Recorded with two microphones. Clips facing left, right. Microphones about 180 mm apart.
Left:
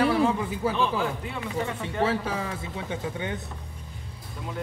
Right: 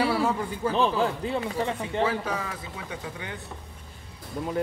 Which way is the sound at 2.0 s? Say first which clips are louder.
Left 2 dB; 30° left (ahead or behind).